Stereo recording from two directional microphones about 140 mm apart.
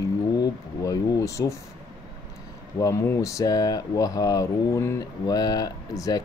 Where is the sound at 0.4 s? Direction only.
25° left (ahead or behind).